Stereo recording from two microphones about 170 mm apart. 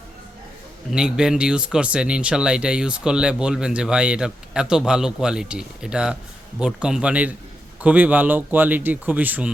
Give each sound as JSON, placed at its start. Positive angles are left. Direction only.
{"t": 0.9, "sound": "speech", "side_deg": -5}